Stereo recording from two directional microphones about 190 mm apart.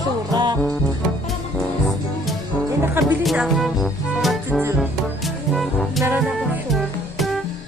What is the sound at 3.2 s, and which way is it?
Music, centre (ahead or behind).